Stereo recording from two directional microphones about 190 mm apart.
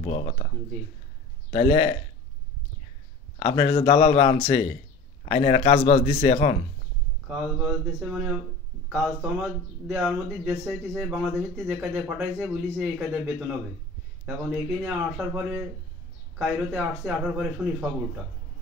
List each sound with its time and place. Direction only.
0.0 s speech: 30° left (ahead or behind)
1.5 s a man's voice: 30° left (ahead or behind)
3.3 s speech: 30° left (ahead or behind)
7.2 s speech: 5° right (ahead or behind)
14.2 s speech: centre (ahead or behind)